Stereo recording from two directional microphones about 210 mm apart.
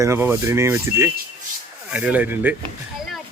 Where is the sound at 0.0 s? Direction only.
10° right (ahead or behind).